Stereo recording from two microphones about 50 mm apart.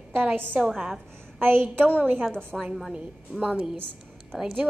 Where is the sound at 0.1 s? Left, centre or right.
Right.